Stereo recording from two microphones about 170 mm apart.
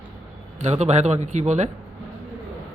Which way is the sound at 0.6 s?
40° right (ahead or behind).